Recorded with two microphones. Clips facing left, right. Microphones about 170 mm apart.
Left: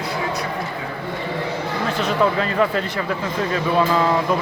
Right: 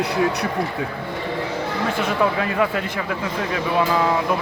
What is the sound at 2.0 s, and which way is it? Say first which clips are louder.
Speech: left 2 dB; 10° right (ahead or behind).